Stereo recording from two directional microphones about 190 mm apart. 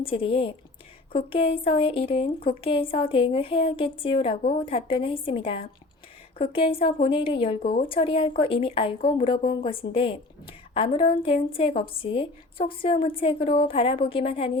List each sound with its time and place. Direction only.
0.0 s speech: 30° left (ahead or behind)